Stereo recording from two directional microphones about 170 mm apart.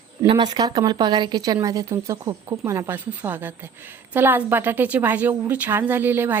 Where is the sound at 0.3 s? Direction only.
25° right (ahead or behind).